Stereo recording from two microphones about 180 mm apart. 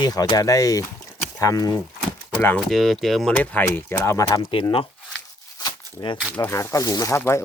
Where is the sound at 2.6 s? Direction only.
Centre (ahead or behind); by 4.3 s 15° left (ahead or behind).